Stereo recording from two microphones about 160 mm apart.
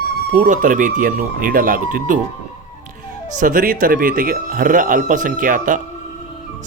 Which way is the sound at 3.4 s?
60° right (ahead or behind).